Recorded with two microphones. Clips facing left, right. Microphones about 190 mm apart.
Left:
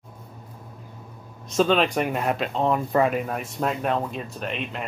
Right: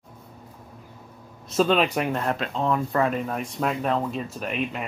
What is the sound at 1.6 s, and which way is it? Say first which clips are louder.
Speech: left 1 dB; 5° right (ahead or behind).